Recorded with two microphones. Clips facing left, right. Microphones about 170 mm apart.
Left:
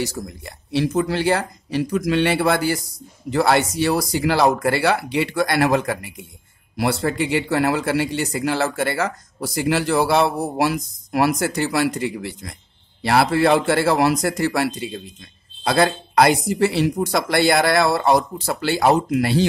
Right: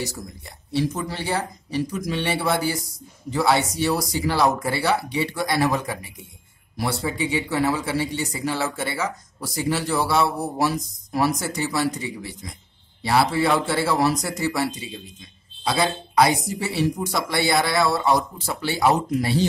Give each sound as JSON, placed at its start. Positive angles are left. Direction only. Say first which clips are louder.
{"t": 0.0, "sound": "a man's voice", "louder": "left 5 dB", "side_deg": 75}
{"t": 13.0, "sound": "a man's voice", "louder": "left 3 dB", "side_deg": 65}
{"t": 15.6, "sound": "a man's voice", "louder": "left 5 dB", "side_deg": 60}